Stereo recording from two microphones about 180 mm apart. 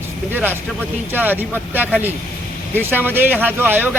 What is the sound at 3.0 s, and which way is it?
Speech, 10° right (ahead or behind).